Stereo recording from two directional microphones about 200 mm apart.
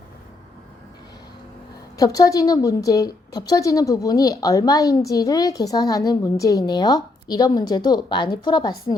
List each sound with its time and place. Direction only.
2.0 s a woman's voice: 20° left (ahead or behind)